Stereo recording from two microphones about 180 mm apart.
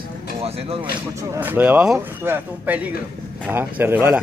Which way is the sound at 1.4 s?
10° right (ahead or behind).